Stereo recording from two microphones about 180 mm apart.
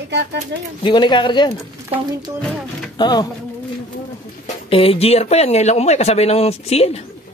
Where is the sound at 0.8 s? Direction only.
25° left (ahead or behind).